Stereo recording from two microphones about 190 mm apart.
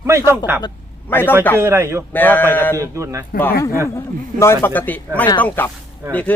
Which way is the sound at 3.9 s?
15° left (ahead or behind).